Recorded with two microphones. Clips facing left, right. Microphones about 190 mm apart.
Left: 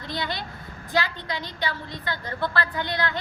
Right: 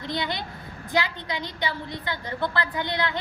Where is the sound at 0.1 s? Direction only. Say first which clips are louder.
Right 1 dB; 20° right (ahead or behind).